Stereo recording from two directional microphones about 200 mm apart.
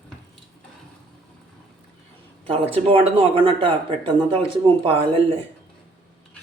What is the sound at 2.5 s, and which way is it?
Speech, 30° right (ahead or behind).